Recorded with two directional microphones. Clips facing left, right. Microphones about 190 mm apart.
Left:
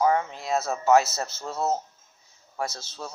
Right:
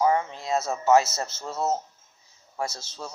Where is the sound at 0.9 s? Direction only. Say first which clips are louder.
Even; 25° right (ahead or behind).